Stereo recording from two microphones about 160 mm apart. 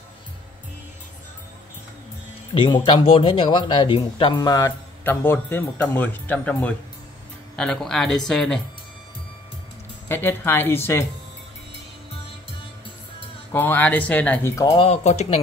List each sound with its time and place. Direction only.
2.5 s speech: 30° left (ahead or behind)
5.0 s speech: 15° left (ahead or behind)
10.0 s speech: 15° left (ahead or behind)
13.5 s speech: 10° left (ahead or behind)
14.7 s speech: 40° left (ahead or behind)